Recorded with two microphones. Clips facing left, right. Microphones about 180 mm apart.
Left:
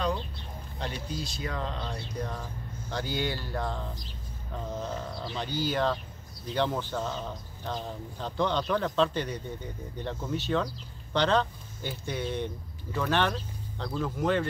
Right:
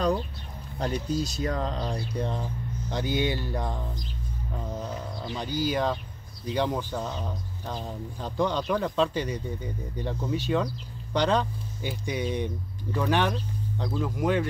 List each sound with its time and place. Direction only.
0.7 s speech: 40° right (ahead or behind)
2.1 s speech: 25° right (ahead or behind)